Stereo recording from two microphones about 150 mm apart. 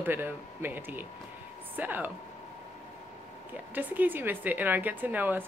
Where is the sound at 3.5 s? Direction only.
10° right (ahead or behind).